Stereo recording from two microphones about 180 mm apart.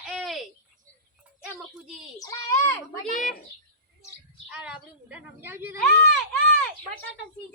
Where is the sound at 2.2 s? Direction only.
20° left (ahead or behind).